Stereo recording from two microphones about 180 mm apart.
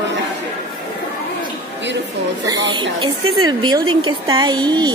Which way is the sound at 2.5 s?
25° right (ahead or behind).